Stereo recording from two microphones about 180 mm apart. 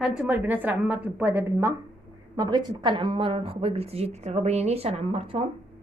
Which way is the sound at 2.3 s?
25° right (ahead or behind).